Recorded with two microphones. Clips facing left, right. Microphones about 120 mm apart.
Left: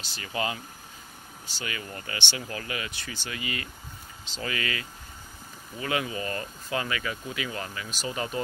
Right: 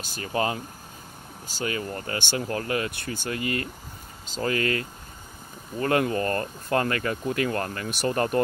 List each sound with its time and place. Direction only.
0.0 s speech: 45° right (ahead or behind)